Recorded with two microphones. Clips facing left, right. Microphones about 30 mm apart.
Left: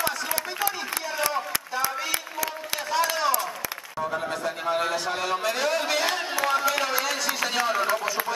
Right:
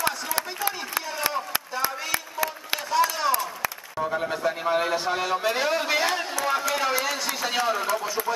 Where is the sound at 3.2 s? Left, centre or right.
Centre.